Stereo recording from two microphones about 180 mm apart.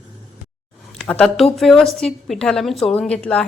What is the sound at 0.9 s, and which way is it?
A woman's voice, 5° left (ahead or behind).